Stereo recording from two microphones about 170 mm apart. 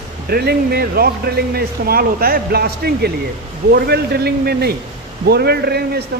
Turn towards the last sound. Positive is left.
turn(degrees=-70)  # may be behind; listen again after turning